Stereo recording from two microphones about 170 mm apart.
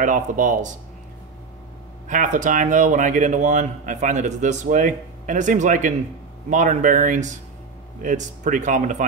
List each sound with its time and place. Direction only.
0.0 s speech: 50° right (ahead or behind)
2.0 s speech: 50° right (ahead or behind)